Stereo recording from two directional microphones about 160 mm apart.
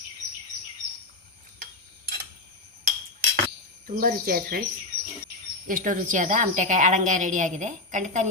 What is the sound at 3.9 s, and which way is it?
Speech, 60° right (ahead or behind).